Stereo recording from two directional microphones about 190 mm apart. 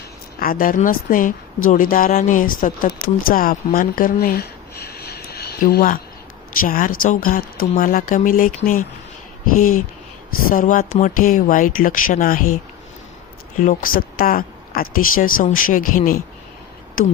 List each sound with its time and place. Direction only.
0.3 s speech: 50° left (ahead or behind)
10.5 s speech: 45° left (ahead or behind)
13.6 s speech: 45° left (ahead or behind)